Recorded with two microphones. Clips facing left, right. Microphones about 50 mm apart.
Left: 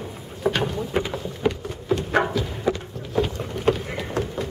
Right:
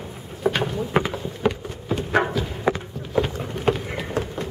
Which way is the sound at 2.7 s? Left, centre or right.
Right.